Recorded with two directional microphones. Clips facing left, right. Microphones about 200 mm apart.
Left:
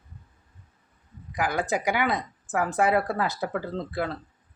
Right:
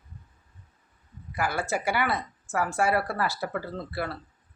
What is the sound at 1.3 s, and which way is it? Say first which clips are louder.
Speech: left 2 dB; 15° left (ahead or behind).